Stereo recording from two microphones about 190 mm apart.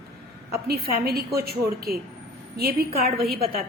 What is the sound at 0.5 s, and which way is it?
A woman's voice, 55° right (ahead or behind).